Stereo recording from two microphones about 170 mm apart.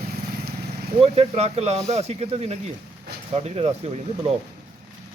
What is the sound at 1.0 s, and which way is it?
Speech, 35° right (ahead or behind).